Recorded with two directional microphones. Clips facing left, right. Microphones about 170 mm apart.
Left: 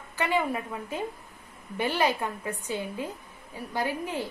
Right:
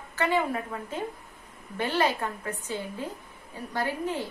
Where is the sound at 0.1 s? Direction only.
15° left (ahead or behind).